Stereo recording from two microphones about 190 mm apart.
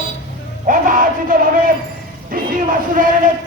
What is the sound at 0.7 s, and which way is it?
Speech, 45° right (ahead or behind).